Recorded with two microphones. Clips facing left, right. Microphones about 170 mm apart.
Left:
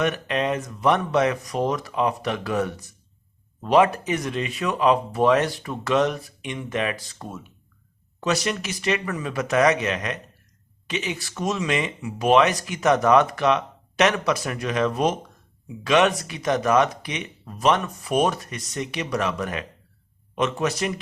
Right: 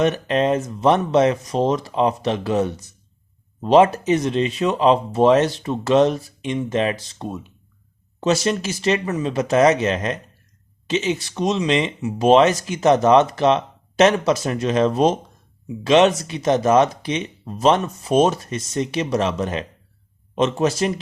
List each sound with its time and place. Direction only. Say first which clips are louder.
0.0 s speech: right 5 dB; 30° right (ahead or behind)